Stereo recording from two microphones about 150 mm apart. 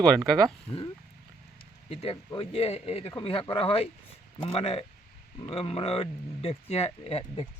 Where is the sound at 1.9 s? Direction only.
40° left (ahead or behind).